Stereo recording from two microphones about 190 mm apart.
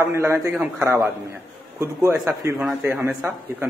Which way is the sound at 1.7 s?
15° right (ahead or behind).